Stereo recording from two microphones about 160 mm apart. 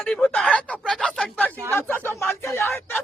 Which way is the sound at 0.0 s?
5° left (ahead or behind).